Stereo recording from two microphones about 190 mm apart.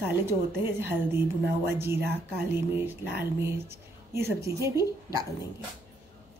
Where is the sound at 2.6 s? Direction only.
10° right (ahead or behind).